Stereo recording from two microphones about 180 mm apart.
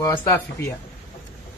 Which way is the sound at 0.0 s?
15° left (ahead or behind).